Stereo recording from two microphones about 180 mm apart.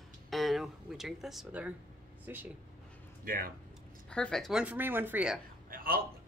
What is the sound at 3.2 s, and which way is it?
Speech, 55° right (ahead or behind).